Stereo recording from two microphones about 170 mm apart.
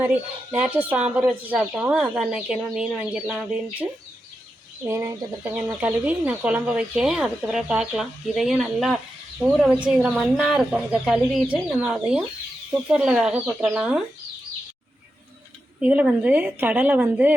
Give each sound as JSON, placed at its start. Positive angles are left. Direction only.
{"t": 0.5, "sound": "speech", "side_deg": -10}
{"t": 4.9, "sound": "a woman's voice", "side_deg": -20}
{"t": 5.4, "sound": "a woman's voice", "side_deg": -5}
{"t": 15.8, "sound": "a woman's voice", "side_deg": -5}